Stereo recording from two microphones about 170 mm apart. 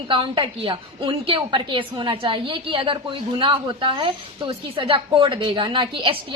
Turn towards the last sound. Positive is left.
turn(degrees=-30)  # may be behind; listen again after turning